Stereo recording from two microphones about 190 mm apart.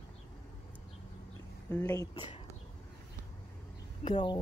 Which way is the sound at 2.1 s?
30° left (ahead or behind).